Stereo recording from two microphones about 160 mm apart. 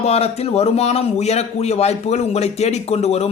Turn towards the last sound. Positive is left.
turn(degrees=40)  # may be behind; listen again after turning